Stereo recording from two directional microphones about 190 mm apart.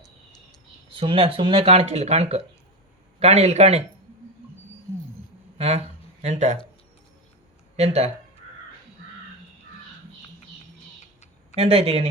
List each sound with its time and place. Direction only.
0.9 s speech: 25° right (ahead or behind)
5.5 s speech: 35° right (ahead or behind)
7.8 s speech: 35° right (ahead or behind)
11.5 s speech: 35° right (ahead or behind)